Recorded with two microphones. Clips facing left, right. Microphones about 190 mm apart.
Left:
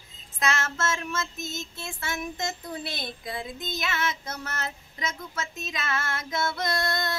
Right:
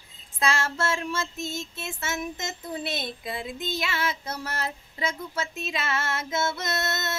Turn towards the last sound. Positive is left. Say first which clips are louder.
# left 1 dB
turn(degrees=-25)  # may be behind; listen again after turning